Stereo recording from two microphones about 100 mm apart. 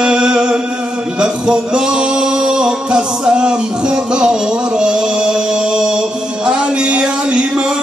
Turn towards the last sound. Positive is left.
turn(degrees=-10)  # may be behind; listen again after turning